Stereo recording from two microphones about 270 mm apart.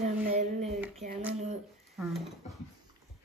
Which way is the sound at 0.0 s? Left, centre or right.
Right.